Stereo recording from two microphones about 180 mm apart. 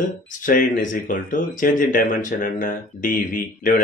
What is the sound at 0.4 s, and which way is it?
Speech, 45° left (ahead or behind).